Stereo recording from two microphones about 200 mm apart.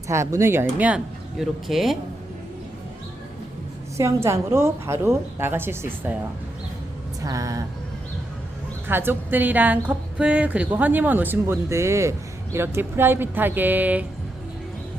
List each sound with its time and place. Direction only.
0.1 s a woman's voice: 15° right (ahead or behind)
3.9 s a woman's voice: 15° right (ahead or behind)
7.2 s a woman's voice: 15° right (ahead or behind)
8.9 s a woman's voice: 10° right (ahead or behind)